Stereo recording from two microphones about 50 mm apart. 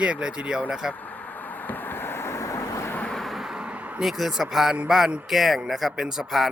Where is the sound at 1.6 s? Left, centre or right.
Left.